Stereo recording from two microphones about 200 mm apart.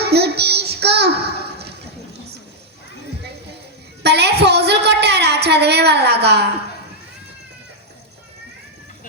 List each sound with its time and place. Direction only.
0.0 s child singing: 55° right (ahead or behind)
4.0 s a sound: 55° right (ahead or behind)
6.2 s a woman's voice: 55° right (ahead or behind)